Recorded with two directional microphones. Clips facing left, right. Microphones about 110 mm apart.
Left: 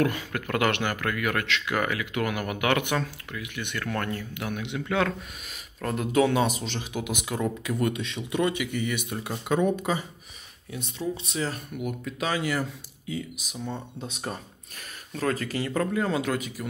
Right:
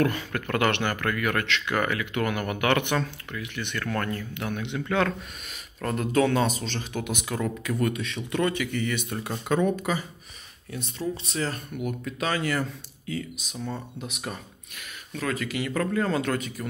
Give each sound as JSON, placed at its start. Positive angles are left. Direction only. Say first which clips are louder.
{"t": 0.0, "sound": "speech", "louder": "right 1 dB", "side_deg": 10}
{"t": 9.6, "sound": "speech", "louder": "left 1 dB", "side_deg": 20}
{"t": 10.7, "sound": "speech", "louder": "even", "side_deg": 10}
{"t": 13.9, "sound": "speech", "louder": "left 1 dB", "side_deg": 30}
{"t": 15.9, "sound": "speech", "louder": "right 1 dB", "side_deg": 10}